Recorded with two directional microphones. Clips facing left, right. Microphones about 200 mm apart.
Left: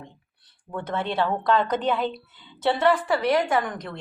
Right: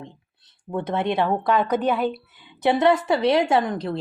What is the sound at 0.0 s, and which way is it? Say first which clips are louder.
A woman's voice: right 4 dB; 20° right (ahead or behind).